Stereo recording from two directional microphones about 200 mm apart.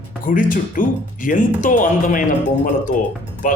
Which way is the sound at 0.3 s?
40° left (ahead or behind).